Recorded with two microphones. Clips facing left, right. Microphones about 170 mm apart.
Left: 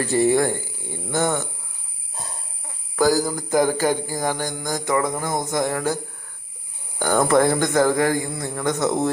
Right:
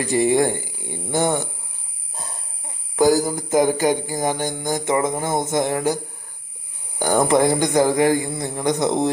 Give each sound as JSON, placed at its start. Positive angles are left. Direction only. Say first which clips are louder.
{"t": 0.0, "sound": "speech", "louder": "right 1 dB", "side_deg": -15}
{"t": 2.9, "sound": "a sound", "louder": "right 2 dB", "side_deg": -20}
{"t": 7.0, "sound": "speech", "louder": "right 1 dB", "side_deg": -15}